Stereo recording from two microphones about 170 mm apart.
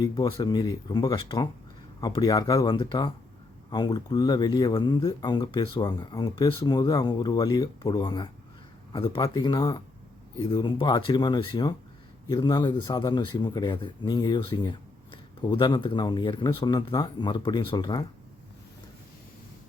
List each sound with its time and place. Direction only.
0.0 s speech: 30° left (ahead or behind)